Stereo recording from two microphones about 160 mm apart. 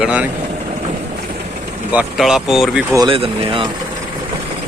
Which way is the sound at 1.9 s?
5° right (ahead or behind).